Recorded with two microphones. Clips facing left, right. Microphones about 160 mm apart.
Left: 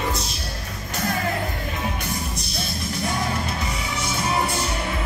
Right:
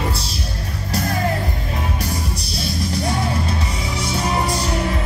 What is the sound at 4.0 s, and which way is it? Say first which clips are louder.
Music: right 3 dB; 35° right (ahead or behind).